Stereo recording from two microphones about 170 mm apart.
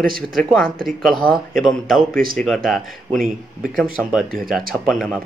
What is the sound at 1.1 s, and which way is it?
Speech, 60° right (ahead or behind).